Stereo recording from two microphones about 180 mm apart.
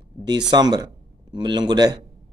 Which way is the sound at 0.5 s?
25° right (ahead or behind).